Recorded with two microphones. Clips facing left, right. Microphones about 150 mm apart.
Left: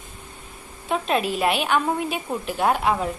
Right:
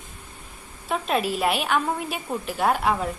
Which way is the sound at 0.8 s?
Centre (ahead or behind).